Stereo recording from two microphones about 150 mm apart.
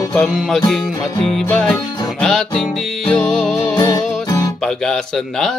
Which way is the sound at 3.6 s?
25° left (ahead or behind).